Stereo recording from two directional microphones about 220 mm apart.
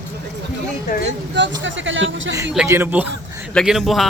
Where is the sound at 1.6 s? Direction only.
60° right (ahead or behind).